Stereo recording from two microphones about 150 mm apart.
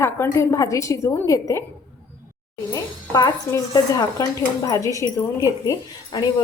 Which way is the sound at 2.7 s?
25° left (ahead or behind).